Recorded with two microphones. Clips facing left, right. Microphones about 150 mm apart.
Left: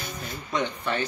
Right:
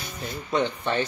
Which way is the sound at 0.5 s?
30° right (ahead or behind).